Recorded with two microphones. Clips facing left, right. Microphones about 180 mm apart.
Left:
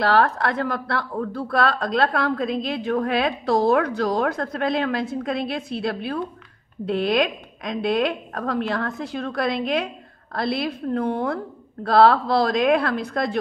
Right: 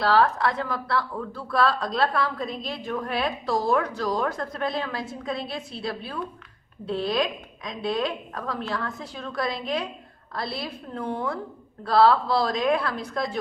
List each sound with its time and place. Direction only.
0.0 s a woman's voice: 60° left (ahead or behind)